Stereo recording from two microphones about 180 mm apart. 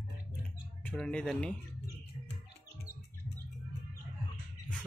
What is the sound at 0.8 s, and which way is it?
Speech, 5° left (ahead or behind).